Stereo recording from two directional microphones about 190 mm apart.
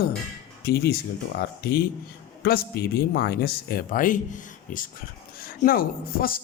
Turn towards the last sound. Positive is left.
turn(degrees=50)  # may be behind; listen again after turning